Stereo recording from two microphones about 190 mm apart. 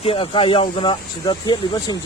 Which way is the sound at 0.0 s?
30° left (ahead or behind).